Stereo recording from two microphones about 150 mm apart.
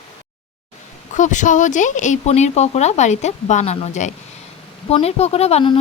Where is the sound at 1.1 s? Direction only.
55° left (ahead or behind).